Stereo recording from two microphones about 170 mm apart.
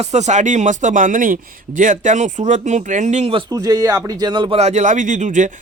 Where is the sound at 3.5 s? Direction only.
20° right (ahead or behind).